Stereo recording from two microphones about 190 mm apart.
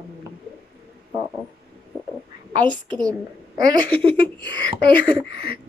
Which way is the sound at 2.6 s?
25° right (ahead or behind).